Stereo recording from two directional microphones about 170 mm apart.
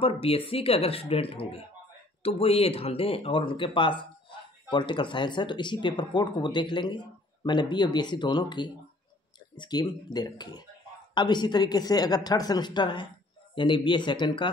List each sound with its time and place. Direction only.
0.0 s speech: 35° left (ahead or behind)